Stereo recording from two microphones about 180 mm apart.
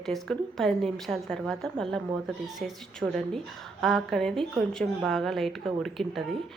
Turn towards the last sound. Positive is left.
turn(degrees=0)  # may be behind; listen again after turning